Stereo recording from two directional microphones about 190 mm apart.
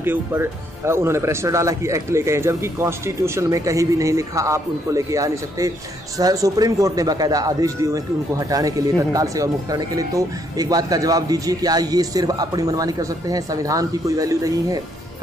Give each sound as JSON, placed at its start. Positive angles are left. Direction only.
{"t": 0.0, "sound": "speech", "side_deg": -10}